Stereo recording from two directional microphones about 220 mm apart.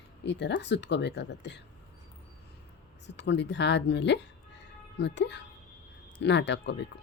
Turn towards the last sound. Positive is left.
turn(degrees=50)  # may be behind; listen again after turning